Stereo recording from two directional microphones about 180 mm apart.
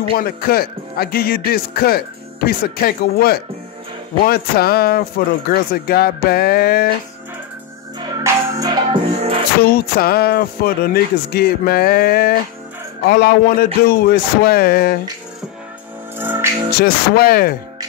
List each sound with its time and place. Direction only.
0.1 s speech: 55° left (ahead or behind)
8.2 s music: 20° right (ahead or behind)
8.9 s music: 35° right (ahead or behind)
9.8 s speech: 60° left (ahead or behind)
16.2 s music: 10° right (ahead or behind)
16.7 s speech: 55° left (ahead or behind)